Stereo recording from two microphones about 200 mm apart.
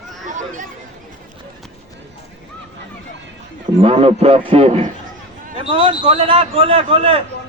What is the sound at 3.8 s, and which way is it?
A man's voice, 30° right (ahead or behind).